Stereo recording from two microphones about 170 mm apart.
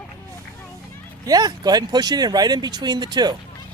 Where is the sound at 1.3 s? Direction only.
25° right (ahead or behind).